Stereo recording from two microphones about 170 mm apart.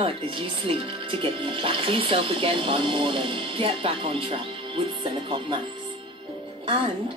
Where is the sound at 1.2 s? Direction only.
30° right (ahead or behind).